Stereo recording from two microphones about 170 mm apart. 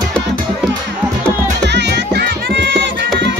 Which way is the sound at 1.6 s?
85° right.